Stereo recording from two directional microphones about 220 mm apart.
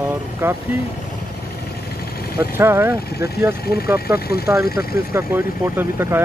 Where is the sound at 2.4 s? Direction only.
10° right (ahead or behind).